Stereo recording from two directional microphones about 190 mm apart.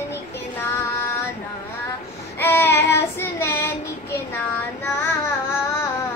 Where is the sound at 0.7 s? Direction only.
15° left (ahead or behind).